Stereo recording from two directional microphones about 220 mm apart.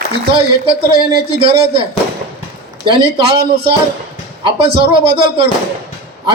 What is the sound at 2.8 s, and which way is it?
Speech, 25° right (ahead or behind).